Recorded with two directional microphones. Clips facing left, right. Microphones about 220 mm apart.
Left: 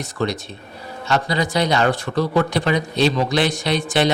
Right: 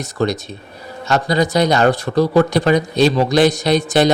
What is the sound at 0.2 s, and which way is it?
Speech, 40° right (ahead or behind).